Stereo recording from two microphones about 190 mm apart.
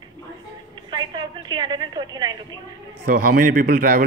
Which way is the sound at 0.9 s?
25° right (ahead or behind).